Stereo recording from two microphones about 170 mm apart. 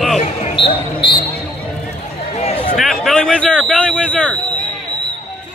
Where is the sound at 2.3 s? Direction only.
35° left (ahead or behind).